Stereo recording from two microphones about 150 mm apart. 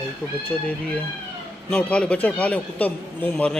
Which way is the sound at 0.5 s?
10° left (ahead or behind).